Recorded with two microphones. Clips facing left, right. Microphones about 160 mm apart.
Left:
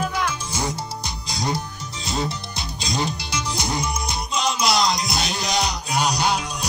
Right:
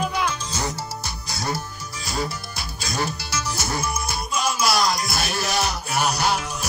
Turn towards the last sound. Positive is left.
turn(degrees=15)  # may be behind; listen again after turning